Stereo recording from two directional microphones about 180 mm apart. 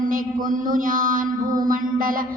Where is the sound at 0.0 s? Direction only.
50° right (ahead or behind).